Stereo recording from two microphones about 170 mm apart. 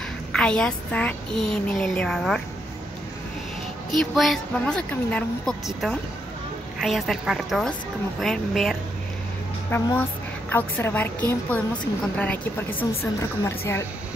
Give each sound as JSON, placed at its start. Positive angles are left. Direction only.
{"t": 0.3, "sound": "a woman's voice", "side_deg": 5}
{"t": 4.0, "sound": "a woman's voice", "side_deg": 0}
{"t": 6.8, "sound": "a woman's voice", "side_deg": 0}
{"t": 9.7, "sound": "a woman's voice", "side_deg": 15}